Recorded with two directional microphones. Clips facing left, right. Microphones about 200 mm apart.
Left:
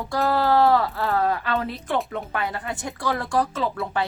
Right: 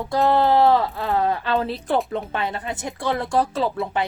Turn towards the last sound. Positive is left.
turn(degrees=-30)  # may be behind; listen again after turning